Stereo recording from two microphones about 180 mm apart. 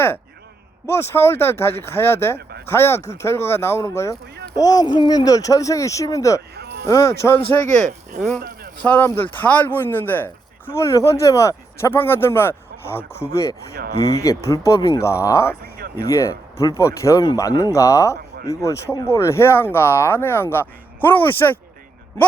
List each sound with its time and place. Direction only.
0.9 s speech: 15° left (ahead or behind)
6.6 s a sound: 70° right (ahead or behind)
6.8 s speech: 15° left (ahead or behind)
7.6 s speech: 45° right (ahead or behind)
8.4 s a sound: 55° right (ahead or behind)
8.8 s speech: 10° left (ahead or behind)